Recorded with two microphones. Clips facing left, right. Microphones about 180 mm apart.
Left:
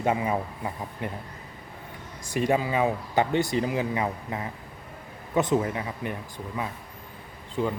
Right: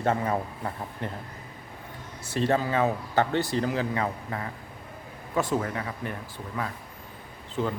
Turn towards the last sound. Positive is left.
turn(degrees=10)  # may be behind; listen again after turning